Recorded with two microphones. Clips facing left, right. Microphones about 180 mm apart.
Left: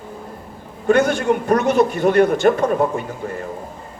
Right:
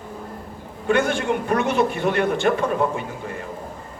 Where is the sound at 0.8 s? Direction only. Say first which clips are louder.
Left 5 dB; 40° left (ahead or behind).